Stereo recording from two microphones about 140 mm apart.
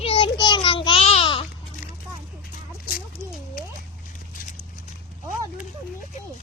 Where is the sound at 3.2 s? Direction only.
20° right (ahead or behind).